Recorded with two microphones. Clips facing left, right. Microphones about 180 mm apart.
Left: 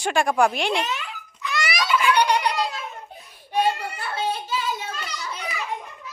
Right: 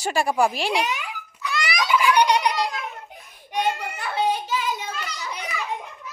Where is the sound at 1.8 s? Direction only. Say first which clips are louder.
Right 1 dB; 15° right (ahead or behind).